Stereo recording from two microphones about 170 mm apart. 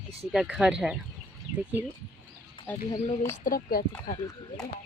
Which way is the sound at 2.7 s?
10° left (ahead or behind).